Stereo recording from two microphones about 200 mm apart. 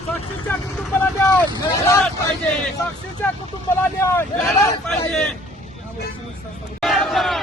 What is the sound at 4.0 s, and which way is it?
Speech, 15° left (ahead or behind).